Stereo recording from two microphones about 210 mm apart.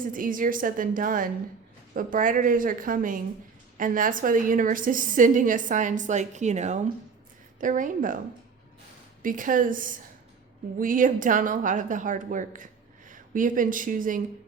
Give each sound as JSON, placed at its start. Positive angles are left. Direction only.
{"t": 0.0, "sound": "a woman's voice", "side_deg": -40}
{"t": 9.2, "sound": "a woman's voice", "side_deg": -40}